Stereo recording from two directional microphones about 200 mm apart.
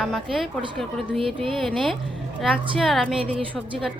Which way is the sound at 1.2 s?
25° right (ahead or behind).